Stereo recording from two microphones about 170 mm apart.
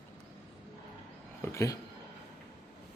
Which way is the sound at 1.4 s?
20° left (ahead or behind).